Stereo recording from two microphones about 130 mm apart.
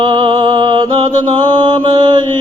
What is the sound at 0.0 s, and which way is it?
Mantra, 35° right (ahead or behind).